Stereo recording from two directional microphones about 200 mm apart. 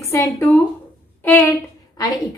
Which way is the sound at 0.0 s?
15° left (ahead or behind).